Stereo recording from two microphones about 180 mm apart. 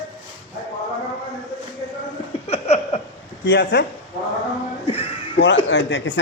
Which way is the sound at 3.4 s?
70° left (ahead or behind).